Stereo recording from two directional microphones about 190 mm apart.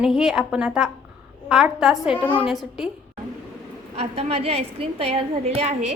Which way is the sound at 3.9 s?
30° right (ahead or behind).